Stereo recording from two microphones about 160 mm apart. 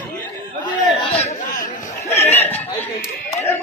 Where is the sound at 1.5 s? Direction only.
55° left (ahead or behind).